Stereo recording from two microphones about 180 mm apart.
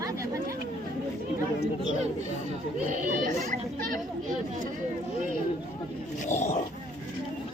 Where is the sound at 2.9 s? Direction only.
45° right (ahead or behind).